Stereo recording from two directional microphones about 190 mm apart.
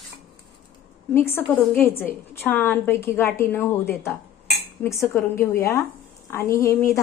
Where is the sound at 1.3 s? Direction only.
10° left (ahead or behind).